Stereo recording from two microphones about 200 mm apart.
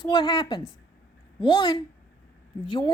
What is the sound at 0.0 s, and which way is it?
Speech, 20° left (ahead or behind).